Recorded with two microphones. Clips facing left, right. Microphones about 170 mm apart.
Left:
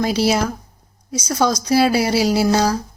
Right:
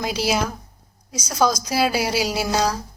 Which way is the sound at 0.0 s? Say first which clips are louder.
Left 5 dB; centre (ahead or behind).